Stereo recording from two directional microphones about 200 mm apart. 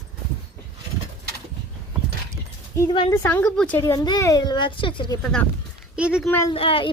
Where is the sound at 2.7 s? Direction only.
20° left (ahead or behind).